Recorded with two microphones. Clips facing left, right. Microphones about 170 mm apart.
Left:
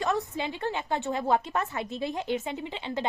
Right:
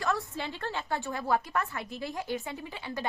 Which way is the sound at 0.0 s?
20° left (ahead or behind).